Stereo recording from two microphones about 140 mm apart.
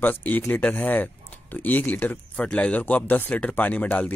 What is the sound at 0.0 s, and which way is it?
Speech, 15° left (ahead or behind).